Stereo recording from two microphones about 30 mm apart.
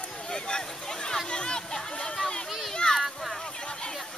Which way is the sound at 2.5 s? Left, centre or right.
Centre.